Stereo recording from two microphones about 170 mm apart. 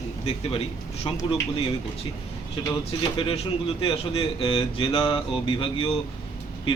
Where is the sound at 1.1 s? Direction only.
30° left (ahead or behind).